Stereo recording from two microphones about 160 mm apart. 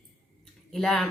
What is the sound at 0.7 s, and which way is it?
Speech, centre (ahead or behind).